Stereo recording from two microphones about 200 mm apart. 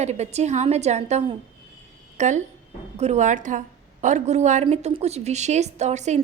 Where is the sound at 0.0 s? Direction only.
35° right (ahead or behind).